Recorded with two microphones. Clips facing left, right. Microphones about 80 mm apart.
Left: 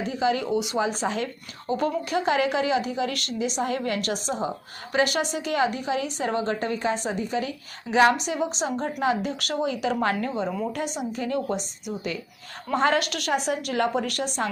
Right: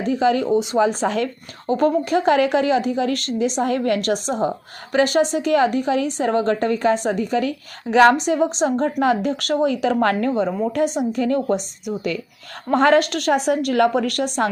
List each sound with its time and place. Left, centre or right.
0.1 s speech: right
0.4 s a woman's voice: right
1.0 s a woman's voice: right
1.6 s a woman's voice: right
8.1 s a woman's voice: right
10.5 s a woman's voice: right